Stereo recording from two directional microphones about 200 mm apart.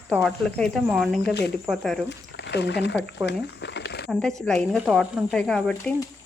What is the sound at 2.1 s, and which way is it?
Speech, 60° left (ahead or behind).